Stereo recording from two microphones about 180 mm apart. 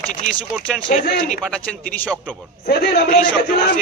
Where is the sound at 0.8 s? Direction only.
55° left (ahead or behind).